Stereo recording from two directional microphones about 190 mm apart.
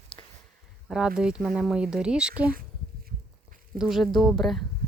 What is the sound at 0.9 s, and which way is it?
Speech, 5° right (ahead or behind).